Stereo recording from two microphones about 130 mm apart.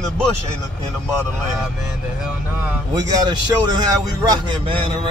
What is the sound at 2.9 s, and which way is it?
A man's voice, 30° right (ahead or behind).